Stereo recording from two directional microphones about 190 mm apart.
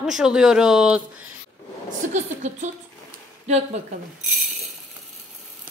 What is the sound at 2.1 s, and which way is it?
Speech, 40° right (ahead or behind).